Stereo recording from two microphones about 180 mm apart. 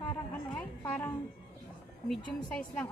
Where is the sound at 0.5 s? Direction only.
10° left (ahead or behind).